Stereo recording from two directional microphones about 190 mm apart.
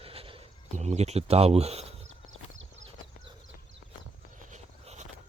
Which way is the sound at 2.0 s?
85° right.